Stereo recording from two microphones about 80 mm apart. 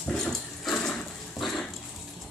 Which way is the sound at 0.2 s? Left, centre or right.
Centre.